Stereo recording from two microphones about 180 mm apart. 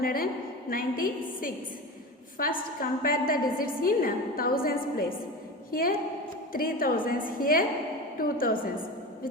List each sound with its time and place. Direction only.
0.0 s a woman's voice: 55° left (ahead or behind)